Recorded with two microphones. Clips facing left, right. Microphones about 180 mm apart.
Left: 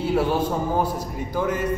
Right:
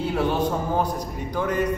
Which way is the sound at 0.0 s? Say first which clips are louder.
Left 2 dB; 10° left (ahead or behind).